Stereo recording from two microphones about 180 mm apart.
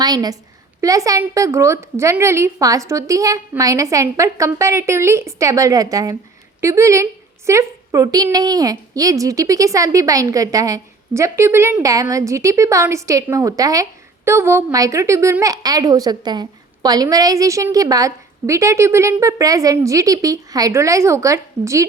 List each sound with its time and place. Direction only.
0.0 s a woman's voice: 20° right (ahead or behind)